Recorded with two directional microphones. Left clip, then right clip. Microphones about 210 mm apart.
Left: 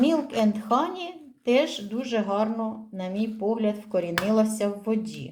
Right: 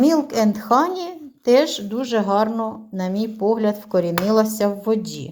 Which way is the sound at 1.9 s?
35° right (ahead or behind).